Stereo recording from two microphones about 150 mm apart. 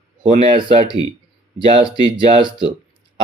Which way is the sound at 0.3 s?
45° right (ahead or behind).